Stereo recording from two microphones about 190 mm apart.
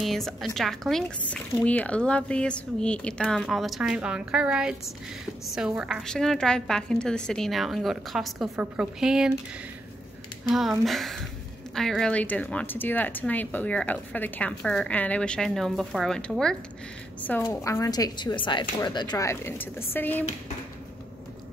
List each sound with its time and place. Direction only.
0.0 s speech: centre (ahead or behind)
10.9 s speech: centre (ahead or behind)
17.5 s a woman's voice: 15° left (ahead or behind)